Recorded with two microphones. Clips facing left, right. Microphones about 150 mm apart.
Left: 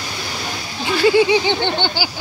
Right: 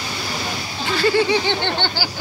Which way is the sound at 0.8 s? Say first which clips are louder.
Left 4 dB; 15° left (ahead or behind).